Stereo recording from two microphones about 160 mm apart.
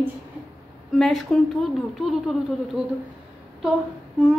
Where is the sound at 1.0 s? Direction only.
Centre (ahead or behind).